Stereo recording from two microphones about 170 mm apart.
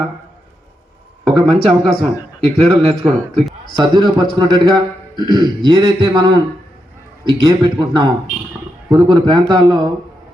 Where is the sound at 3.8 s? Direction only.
25° right (ahead or behind).